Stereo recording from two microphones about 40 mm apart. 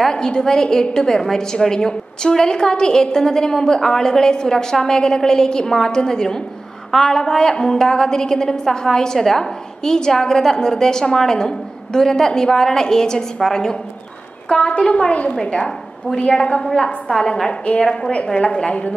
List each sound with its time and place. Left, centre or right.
0.1 s a woman's voice: centre
14.5 s a woman's voice: left
16.3 s a woman's voice: left
18.4 s a woman's voice: left